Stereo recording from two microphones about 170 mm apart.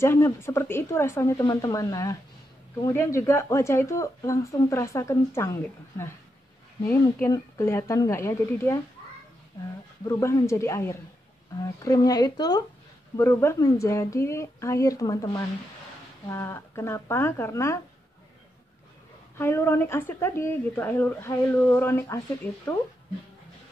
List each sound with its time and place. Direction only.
0.0 s a woman's voice: 15° left (ahead or behind)
10.0 s a woman's voice: 20° left (ahead or behind)
19.3 s a woman's voice: 15° left (ahead or behind)